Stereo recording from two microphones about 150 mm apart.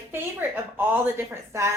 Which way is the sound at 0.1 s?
15° right (ahead or behind).